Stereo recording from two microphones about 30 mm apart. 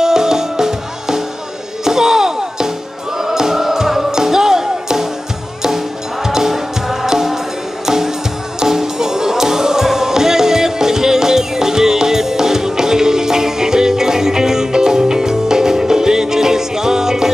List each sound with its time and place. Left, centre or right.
0.0 s music: centre
6.2 s music: centre